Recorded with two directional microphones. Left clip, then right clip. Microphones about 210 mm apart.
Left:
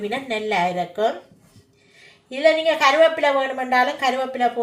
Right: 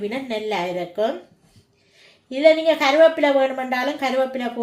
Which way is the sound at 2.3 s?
25° right (ahead or behind).